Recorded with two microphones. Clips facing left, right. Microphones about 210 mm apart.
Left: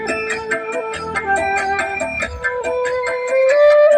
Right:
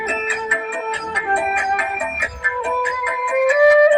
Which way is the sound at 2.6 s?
40° left (ahead or behind).